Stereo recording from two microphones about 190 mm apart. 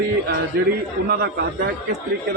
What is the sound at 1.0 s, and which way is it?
Speech, 60° right (ahead or behind).